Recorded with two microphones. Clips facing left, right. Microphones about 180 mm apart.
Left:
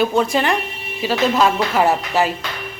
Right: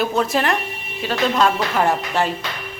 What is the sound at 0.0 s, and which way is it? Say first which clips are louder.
Speech: left 2 dB; centre (ahead or behind).